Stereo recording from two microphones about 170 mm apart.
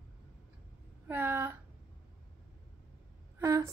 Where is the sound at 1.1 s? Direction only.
10° right (ahead or behind).